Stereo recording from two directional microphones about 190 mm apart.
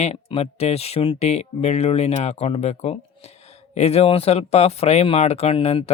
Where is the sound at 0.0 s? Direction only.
35° left (ahead or behind).